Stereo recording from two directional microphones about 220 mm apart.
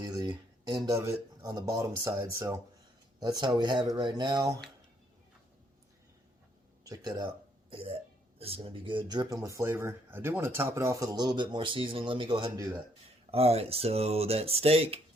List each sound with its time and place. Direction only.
0.0 s speech: 20° right (ahead or behind)
6.8 s speech: 15° right (ahead or behind)